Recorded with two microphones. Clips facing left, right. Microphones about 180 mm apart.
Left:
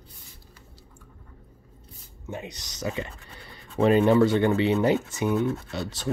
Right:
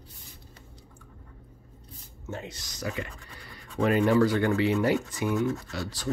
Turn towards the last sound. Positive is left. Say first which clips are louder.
# left 2 dB
turn(degrees=25)  # may be behind; listen again after turning